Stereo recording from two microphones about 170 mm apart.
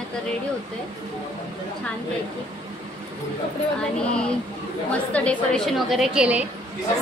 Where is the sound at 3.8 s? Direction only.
5° left (ahead or behind).